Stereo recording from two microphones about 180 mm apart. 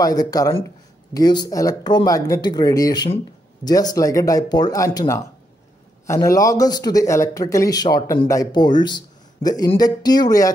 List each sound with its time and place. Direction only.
0.0 s a man's voice: 20° left (ahead or behind)